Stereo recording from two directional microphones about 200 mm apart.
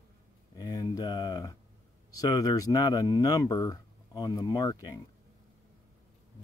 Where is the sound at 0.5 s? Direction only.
20° left (ahead or behind).